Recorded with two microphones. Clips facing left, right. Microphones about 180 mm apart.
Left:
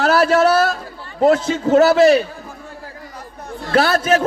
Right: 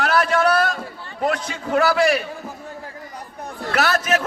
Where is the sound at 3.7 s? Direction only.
30° left (ahead or behind).